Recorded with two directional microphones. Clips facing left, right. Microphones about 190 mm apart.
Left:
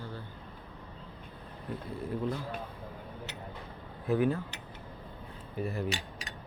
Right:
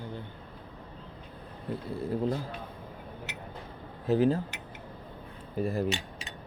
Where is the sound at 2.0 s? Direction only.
30° right (ahead or behind).